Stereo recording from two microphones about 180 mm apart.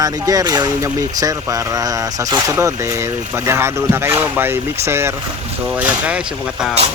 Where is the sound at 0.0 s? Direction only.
20° right (ahead or behind).